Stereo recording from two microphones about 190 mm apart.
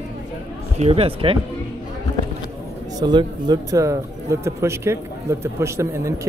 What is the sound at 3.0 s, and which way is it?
Speech, 25° right (ahead or behind).